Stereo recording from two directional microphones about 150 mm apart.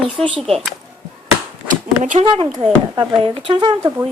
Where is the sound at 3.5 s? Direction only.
30° right (ahead or behind).